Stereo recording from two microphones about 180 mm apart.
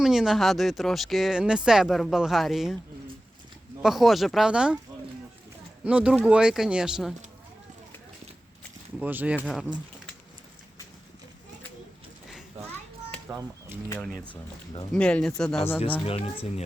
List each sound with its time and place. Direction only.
0.0 s speech: centre (ahead or behind)
3.8 s speech: centre (ahead or behind)
5.8 s speech: 5° right (ahead or behind)
9.0 s speech: 10° right (ahead or behind)
13.2 s speech: 10° right (ahead or behind)
14.9 s speech: 5° left (ahead or behind)
16.0 s speech: 35° left (ahead or behind)